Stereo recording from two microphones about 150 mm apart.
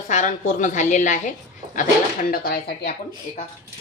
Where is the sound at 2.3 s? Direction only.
85° left.